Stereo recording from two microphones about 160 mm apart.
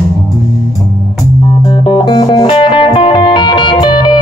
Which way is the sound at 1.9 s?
25° left (ahead or behind).